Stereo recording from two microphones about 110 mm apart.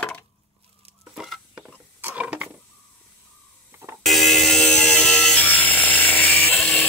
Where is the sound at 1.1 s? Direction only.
Centre (ahead or behind).